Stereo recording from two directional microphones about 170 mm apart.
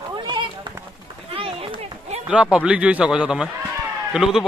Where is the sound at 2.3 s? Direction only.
5° right (ahead or behind).